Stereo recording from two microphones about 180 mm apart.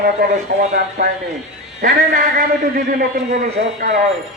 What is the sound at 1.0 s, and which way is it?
A man's voice, 55° right (ahead or behind).